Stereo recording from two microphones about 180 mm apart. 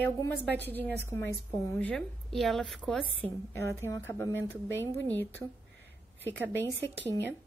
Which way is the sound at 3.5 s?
15° left (ahead or behind).